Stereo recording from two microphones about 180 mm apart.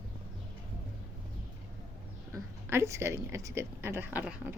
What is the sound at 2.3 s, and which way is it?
A woman's voice, 15° right (ahead or behind).